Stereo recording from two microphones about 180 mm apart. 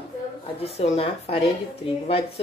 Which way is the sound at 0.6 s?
35° left (ahead or behind).